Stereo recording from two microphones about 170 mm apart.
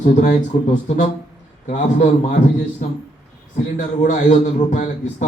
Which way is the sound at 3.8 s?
45° left (ahead or behind).